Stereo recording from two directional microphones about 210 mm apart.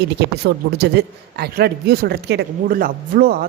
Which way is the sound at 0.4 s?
50° right (ahead or behind).